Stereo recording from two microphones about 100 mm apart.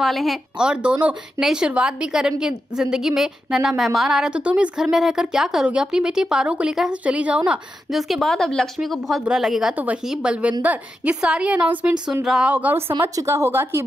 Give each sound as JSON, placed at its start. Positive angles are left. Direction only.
{"t": 0.0, "sound": "a woman's voice", "side_deg": 0}
{"t": 12.5, "sound": "a woman's voice", "side_deg": -20}